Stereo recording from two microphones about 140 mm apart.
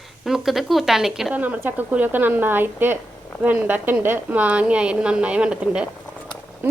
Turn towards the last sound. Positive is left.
turn(degrees=-15)  # may be behind; listen again after turning